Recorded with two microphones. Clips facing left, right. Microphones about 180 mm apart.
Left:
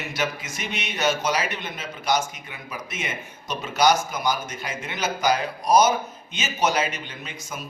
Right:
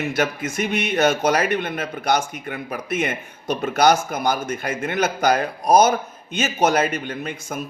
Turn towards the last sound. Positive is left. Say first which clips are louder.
# right 8 dB
turn(degrees=-50)  # may be behind; listen again after turning